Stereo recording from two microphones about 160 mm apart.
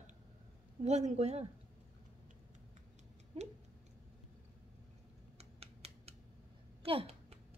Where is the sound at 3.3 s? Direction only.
40° right (ahead or behind).